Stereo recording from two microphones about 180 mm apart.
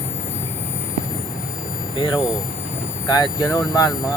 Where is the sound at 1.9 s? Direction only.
25° left (ahead or behind).